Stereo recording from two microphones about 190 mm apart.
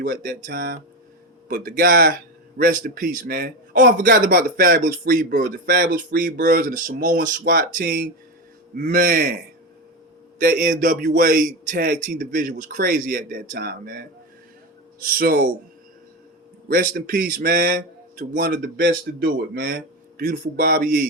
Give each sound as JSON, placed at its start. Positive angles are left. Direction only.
{"t": 0.0, "sound": "a man's voice", "side_deg": -50}
{"t": 10.4, "sound": "a man's voice", "side_deg": -45}
{"t": 16.6, "sound": "a man's voice", "side_deg": -50}